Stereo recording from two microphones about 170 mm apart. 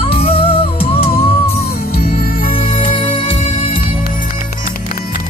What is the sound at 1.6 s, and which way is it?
Music, 60° left (ahead or behind).